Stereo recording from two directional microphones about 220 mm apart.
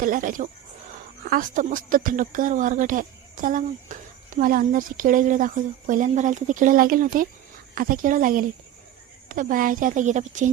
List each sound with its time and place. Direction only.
0.0 s speech: 40° right (ahead or behind)